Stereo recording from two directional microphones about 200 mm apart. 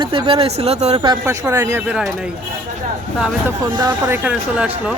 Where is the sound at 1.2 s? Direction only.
15° right (ahead or behind).